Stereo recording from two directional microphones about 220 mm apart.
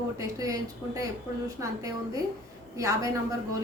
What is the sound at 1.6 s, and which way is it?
A woman's voice, 15° right (ahead or behind).